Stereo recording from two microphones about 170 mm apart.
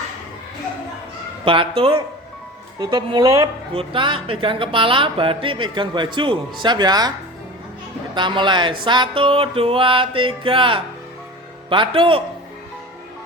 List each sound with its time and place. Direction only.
1.5 s music: 30° right (ahead or behind)
2.8 s speech: 25° right (ahead or behind)
8.1 s speech: 30° right (ahead or behind)
8.8 s music: 30° right (ahead or behind)